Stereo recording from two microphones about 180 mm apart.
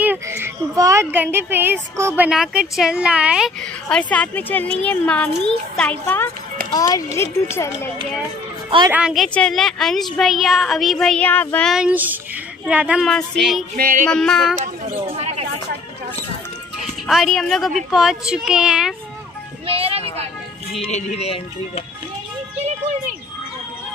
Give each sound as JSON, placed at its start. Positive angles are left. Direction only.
{"t": 0.0, "sound": "speech", "side_deg": -10}
{"t": 8.6, "sound": "a woman's voice", "side_deg": -25}
{"t": 8.9, "sound": "a woman's voice", "side_deg": -5}
{"t": 11.7, "sound": "a woman's voice", "side_deg": -5}
{"t": 13.7, "sound": "music", "side_deg": -50}
{"t": 14.0, "sound": "a woman's voice", "side_deg": 5}
{"t": 14.6, "sound": "speech", "side_deg": -35}
{"t": 17.1, "sound": "a woman's voice", "side_deg": 0}
{"t": 19.6, "sound": "a sound", "side_deg": -30}
{"t": 20.8, "sound": "speech", "side_deg": 35}